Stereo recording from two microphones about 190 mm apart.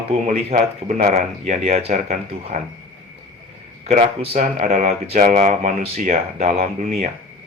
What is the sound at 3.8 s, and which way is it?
Speech, 35° right (ahead or behind).